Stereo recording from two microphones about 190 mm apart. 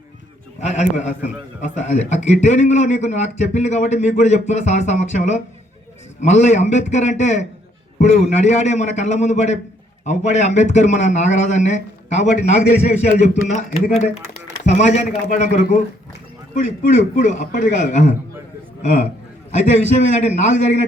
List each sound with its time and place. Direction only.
0.6 s a man's voice: 35° left (ahead or behind)
20.1 s a man's voice: 35° left (ahead or behind)